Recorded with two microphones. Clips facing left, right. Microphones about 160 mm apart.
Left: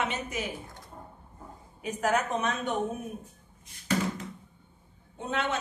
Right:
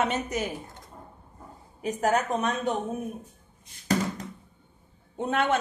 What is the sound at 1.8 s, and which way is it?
Speech, 35° right (ahead or behind).